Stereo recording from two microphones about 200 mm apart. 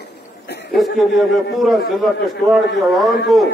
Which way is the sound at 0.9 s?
Centre (ahead or behind).